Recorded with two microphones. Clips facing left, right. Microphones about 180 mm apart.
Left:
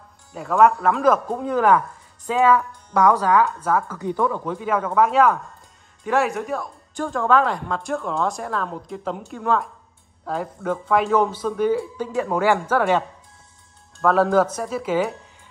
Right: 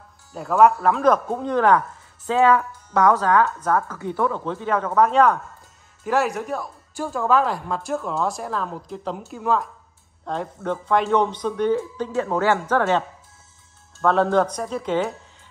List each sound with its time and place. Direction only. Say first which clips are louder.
0.3 s a woman's voice: even; centre (ahead or behind)